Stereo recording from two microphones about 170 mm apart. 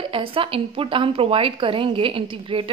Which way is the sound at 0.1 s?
30° right (ahead or behind).